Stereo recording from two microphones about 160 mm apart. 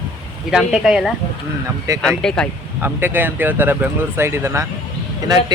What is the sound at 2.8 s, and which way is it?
Speech, 10° right (ahead or behind).